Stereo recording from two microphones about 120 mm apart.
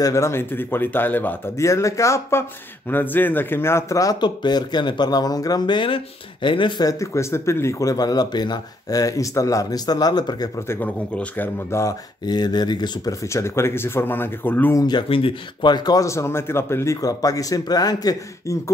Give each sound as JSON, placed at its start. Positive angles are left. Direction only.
{"t": 0.0, "sound": "a man's voice", "side_deg": 25}
{"t": 1.7, "sound": "speech", "side_deg": 25}
{"t": 6.9, "sound": "speech", "side_deg": 25}
{"t": 10.7, "sound": "a man's voice", "side_deg": 15}
{"t": 12.3, "sound": "speech", "side_deg": 35}
{"t": 13.3, "sound": "speech", "side_deg": 20}
{"t": 14.8, "sound": "speech", "side_deg": 40}